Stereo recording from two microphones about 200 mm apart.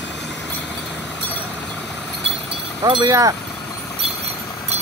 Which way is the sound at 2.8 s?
20° right (ahead or behind).